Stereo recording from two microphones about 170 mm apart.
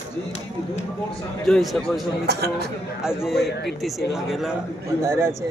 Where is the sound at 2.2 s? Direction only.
70° right (ahead or behind).